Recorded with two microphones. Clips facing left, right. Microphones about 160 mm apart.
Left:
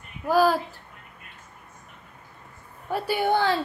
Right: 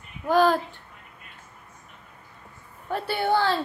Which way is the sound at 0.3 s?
5° left (ahead or behind).